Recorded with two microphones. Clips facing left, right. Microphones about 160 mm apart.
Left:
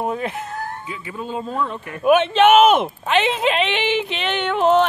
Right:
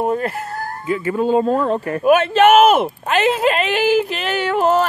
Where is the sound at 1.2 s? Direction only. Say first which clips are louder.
Right 8 dB; 45° right (ahead or behind).